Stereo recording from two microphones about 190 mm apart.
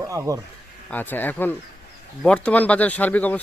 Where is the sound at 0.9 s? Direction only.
10° left (ahead or behind).